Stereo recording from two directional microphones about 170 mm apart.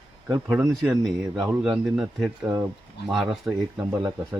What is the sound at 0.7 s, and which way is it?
Speech, centre (ahead or behind).